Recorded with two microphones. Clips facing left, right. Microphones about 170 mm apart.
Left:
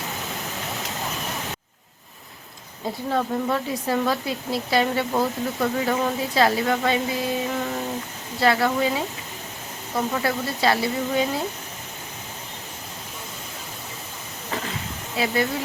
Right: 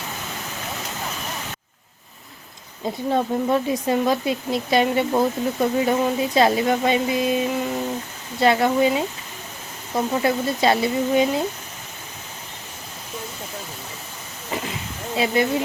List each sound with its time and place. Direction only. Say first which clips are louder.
0.0 s vehicle: left 1 dB; centre (ahead or behind)
3.1 s speech: right 3 dB; 20° right (ahead or behind)
14.5 s a sound: right 2 dB; 15° right (ahead or behind)